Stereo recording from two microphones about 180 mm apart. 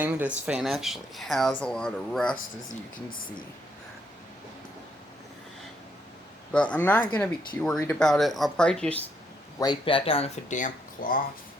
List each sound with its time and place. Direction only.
0.0 s speech: 10° right (ahead or behind); by 2.3 s 5° left (ahead or behind)
3.1 s speech: 50° left (ahead or behind)
6.5 s speech: 5° left (ahead or behind)
9.6 s speech: 25° left (ahead or behind); by 11.2 s 50° left (ahead or behind)